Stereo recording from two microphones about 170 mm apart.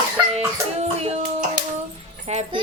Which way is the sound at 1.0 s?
35° right (ahead or behind).